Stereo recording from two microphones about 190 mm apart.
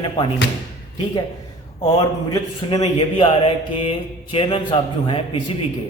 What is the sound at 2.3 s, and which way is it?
A man's voice, 20° left (ahead or behind).